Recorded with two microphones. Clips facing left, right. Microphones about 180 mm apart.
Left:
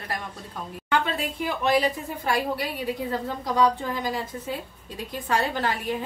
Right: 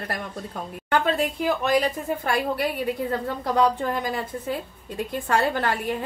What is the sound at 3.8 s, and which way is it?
Speech, 60° right (ahead or behind).